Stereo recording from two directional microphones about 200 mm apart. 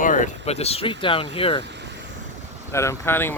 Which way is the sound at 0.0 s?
40° left (ahead or behind).